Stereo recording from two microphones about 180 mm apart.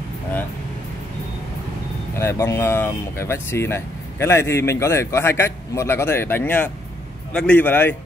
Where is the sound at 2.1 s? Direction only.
15° left (ahead or behind).